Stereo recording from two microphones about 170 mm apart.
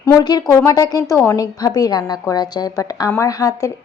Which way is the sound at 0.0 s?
20° left (ahead or behind).